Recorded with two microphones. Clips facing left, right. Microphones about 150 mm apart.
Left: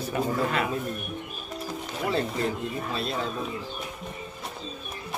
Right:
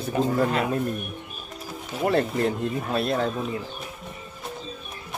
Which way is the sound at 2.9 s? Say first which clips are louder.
Right 8 dB; 55° right (ahead or behind).